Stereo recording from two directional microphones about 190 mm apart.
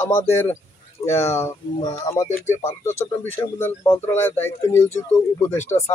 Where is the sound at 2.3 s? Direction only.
40° left (ahead or behind).